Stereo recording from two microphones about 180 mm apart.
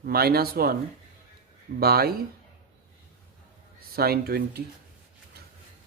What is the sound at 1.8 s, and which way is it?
Speech, 60° right (ahead or behind).